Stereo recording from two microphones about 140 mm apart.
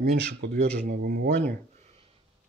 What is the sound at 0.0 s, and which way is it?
Speech, 60° right (ahead or behind).